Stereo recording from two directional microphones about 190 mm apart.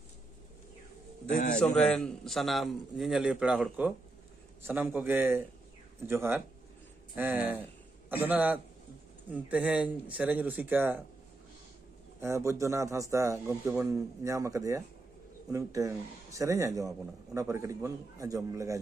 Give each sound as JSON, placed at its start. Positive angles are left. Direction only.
{"t": 1.3, "sound": "a man's voice", "side_deg": 40}
{"t": 1.6, "sound": "a man's voice", "side_deg": 5}
{"t": 12.2, "sound": "a man's voice", "side_deg": -15}